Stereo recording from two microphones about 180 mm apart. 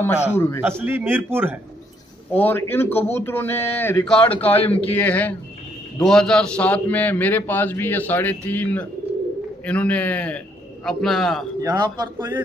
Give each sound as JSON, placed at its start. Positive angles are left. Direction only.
{"t": 0.3, "sound": "a man's voice", "side_deg": 15}
{"t": 0.6, "sound": "a man's voice", "side_deg": -10}
{"t": 2.3, "sound": "a man's voice", "side_deg": 10}
{"t": 11.6, "sound": "a man's voice", "side_deg": -20}